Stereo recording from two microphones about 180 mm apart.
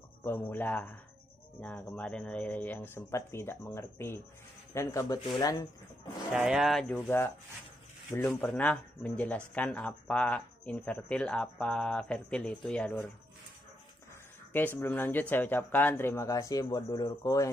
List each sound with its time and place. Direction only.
0.2 s speech: 10° left (ahead or behind)
6.3 s speech: 5° right (ahead or behind)
14.8 s speech: 10° left (ahead or behind)